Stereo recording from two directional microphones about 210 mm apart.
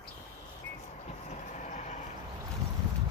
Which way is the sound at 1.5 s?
35° left (ahead or behind).